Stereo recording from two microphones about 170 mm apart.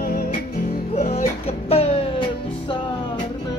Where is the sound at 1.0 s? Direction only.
40° left (ahead or behind).